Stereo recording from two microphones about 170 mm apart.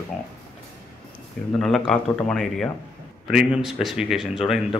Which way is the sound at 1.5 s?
5° left (ahead or behind).